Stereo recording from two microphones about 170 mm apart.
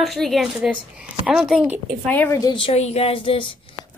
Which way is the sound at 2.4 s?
30° left (ahead or behind).